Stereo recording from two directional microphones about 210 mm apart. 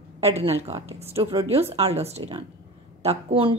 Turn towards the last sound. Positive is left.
turn(degrees=-25)  # may be behind; listen again after turning